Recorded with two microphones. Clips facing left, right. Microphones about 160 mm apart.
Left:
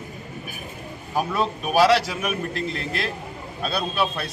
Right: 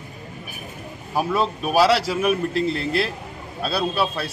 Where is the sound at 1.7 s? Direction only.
Centre (ahead or behind).